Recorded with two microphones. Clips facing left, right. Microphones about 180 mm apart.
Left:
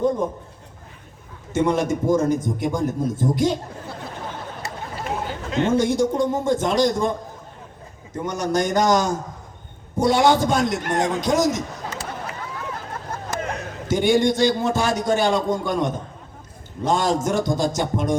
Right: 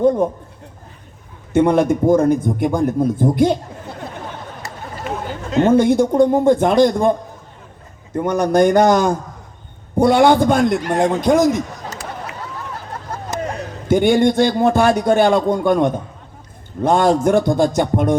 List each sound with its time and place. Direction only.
0.0 s a man's voice: 55° right (ahead or behind)
1.5 s a man's voice: 55° right (ahead or behind)
5.5 s a man's voice: 55° right (ahead or behind)
13.8 s a man's voice: 55° right (ahead or behind)